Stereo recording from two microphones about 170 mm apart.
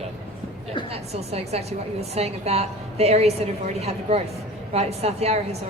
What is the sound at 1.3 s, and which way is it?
A woman's voice, 40° right (ahead or behind).